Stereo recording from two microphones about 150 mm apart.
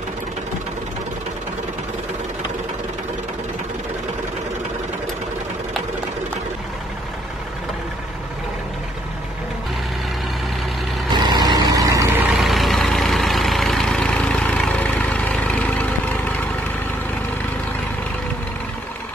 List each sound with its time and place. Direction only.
11.1 s vehicle: 30° right (ahead or behind); by 12.4 s 15° right (ahead or behind)
12.4 s vehicle: centre (ahead or behind)